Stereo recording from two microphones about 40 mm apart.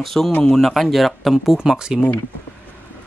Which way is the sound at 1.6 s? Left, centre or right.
Centre.